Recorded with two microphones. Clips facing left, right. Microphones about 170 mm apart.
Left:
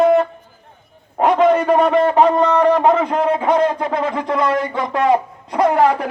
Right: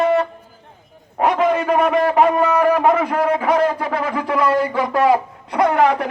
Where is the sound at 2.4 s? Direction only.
10° right (ahead or behind).